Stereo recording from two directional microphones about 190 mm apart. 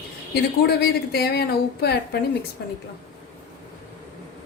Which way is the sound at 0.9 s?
55° left (ahead or behind).